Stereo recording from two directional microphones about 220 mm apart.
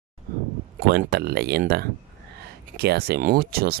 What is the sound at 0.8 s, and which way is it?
Speech, 45° right (ahead or behind).